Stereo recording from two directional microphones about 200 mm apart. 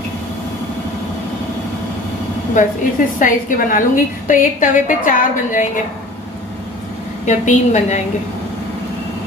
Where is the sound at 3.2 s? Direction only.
40° left (ahead or behind).